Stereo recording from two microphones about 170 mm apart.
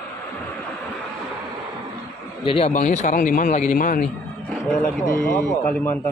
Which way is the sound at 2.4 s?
35° left (ahead or behind).